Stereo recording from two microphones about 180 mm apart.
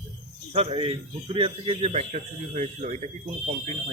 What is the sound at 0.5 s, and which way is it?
A man's voice, 30° right (ahead or behind).